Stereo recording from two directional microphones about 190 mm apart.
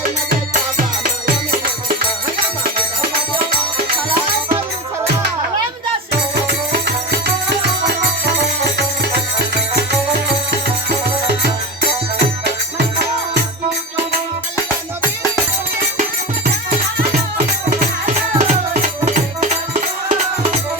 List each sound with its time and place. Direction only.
0.8 s music: 50° right (ahead or behind)
6.5 s music: 55° right (ahead or behind)
18.3 s music: 35° right (ahead or behind)